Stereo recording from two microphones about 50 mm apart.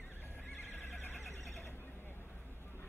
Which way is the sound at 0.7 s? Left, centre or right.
Left.